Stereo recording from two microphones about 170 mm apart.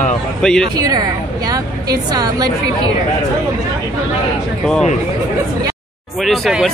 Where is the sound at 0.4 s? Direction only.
5° left (ahead or behind).